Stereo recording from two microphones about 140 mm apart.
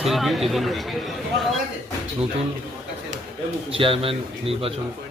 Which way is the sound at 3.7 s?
40° right (ahead or behind).